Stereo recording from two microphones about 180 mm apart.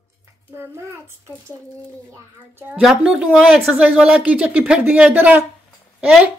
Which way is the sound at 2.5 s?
10° right (ahead or behind).